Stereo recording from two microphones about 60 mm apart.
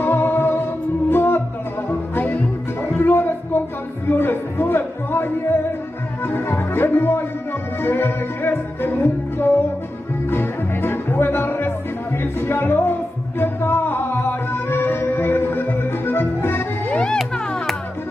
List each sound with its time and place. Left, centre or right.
0.0 s music: left
3.0 s a sound: left
4.1 s music: left
16.9 s music: centre